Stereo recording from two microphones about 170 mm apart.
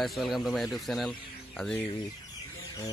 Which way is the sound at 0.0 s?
Centre (ahead or behind).